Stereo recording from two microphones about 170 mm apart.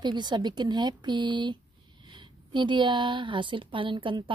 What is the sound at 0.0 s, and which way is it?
A woman's voice, 25° right (ahead or behind).